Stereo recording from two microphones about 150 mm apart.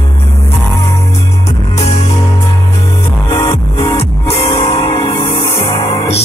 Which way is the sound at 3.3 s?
40° left (ahead or behind).